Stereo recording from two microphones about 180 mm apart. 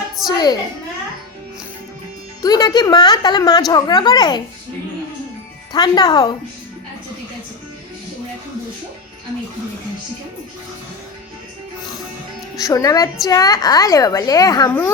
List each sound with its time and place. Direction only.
0.3 s a woman's voice: 20° left (ahead or behind)
2.4 s a woman's voice: 20° left (ahead or behind)
5.7 s a woman's voice: 20° left (ahead or behind)
12.5 s a woman's voice: 20° left (ahead or behind)